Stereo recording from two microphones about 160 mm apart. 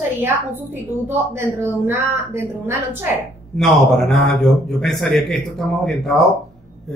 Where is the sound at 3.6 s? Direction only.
Centre (ahead or behind).